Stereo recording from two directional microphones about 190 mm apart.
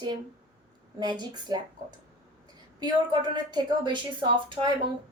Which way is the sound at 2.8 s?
25° right (ahead or behind).